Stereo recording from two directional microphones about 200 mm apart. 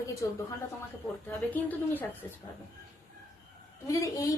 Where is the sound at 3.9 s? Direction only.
15° left (ahead or behind).